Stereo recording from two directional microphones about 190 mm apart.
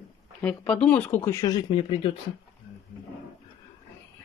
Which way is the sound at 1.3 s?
20° left (ahead or behind).